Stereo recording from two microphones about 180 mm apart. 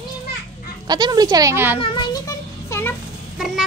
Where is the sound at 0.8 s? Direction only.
20° right (ahead or behind).